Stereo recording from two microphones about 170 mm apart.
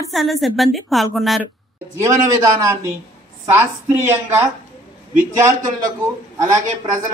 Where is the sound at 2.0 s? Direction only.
20° right (ahead or behind).